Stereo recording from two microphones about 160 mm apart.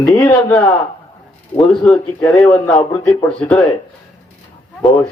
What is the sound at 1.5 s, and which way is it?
Speech, 5° left (ahead or behind).